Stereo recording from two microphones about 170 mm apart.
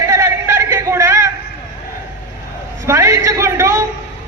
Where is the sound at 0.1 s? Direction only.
15° right (ahead or behind).